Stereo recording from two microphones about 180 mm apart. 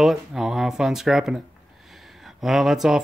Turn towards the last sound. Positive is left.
turn(degrees=0)  # may be behind; listen again after turning